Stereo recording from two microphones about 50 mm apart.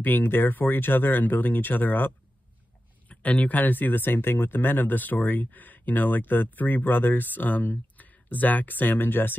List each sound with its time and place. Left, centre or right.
0.0 s speech: left
3.1 s speech: left